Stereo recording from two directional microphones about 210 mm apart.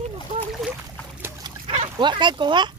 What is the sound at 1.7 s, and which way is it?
Speech, 25° right (ahead or behind).